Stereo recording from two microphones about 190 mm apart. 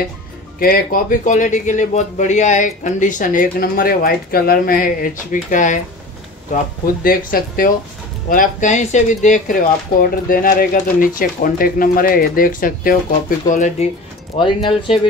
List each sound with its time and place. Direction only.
0.6 s speech: 50° left (ahead or behind)
14.3 s speech: 25° left (ahead or behind)